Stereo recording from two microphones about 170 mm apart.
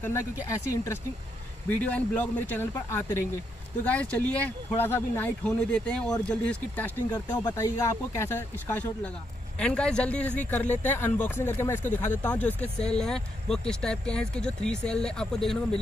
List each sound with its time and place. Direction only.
0.0 s speech: 15° left (ahead or behind)